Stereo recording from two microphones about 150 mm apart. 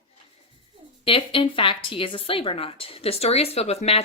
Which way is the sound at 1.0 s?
35° left (ahead or behind).